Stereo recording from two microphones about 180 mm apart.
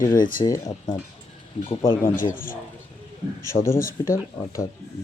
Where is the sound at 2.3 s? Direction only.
50° left (ahead or behind).